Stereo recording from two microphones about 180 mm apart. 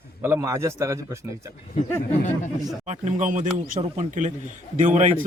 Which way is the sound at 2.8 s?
40° right (ahead or behind).